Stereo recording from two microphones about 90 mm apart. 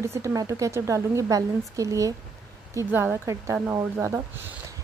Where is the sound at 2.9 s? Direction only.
30° right (ahead or behind).